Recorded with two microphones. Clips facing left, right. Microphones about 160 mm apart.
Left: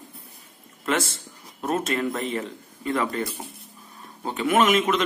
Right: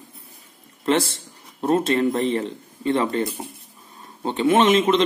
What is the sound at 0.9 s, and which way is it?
A man's voice, 30° right (ahead or behind).